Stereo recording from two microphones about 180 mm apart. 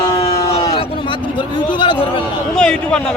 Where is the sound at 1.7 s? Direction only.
25° left (ahead or behind).